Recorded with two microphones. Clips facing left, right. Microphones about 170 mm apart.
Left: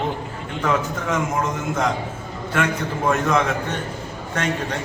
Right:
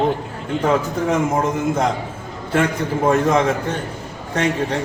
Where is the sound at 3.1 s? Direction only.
30° right (ahead or behind).